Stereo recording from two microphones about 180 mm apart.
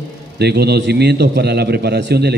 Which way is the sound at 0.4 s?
65° right (ahead or behind).